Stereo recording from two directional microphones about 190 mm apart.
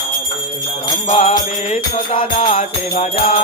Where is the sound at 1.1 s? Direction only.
35° left (ahead or behind).